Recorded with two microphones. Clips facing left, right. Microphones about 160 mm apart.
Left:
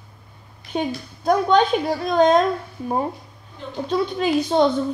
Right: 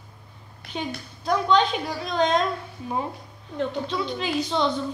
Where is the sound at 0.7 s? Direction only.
50° left (ahead or behind).